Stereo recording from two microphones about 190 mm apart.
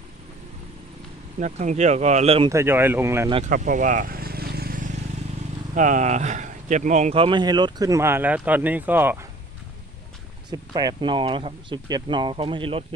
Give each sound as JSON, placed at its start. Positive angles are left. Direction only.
{"t": 1.4, "sound": "speech", "side_deg": -40}
{"t": 2.5, "sound": "speech", "side_deg": -10}
{"t": 3.4, "sound": "vehicle", "side_deg": -45}
{"t": 5.8, "sound": "a man's voice", "side_deg": -40}
{"t": 10.5, "sound": "a man's voice", "side_deg": -20}